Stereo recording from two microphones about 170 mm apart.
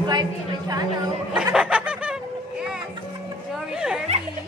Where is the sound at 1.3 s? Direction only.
5° right (ahead or behind).